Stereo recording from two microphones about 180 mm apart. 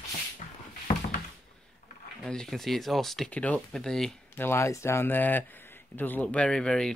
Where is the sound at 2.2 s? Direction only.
5° left (ahead or behind).